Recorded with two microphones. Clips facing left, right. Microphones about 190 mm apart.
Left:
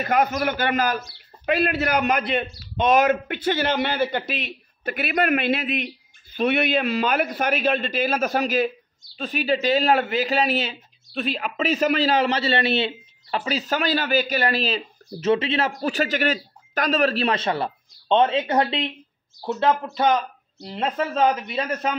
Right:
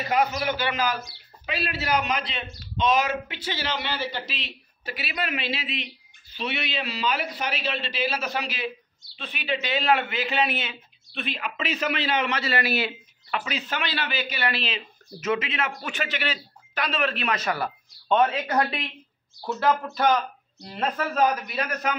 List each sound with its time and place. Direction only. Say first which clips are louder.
0.0 s a man's voice: left 3 dB; 50° left (ahead or behind); by 21.9 s 25° left (ahead or behind)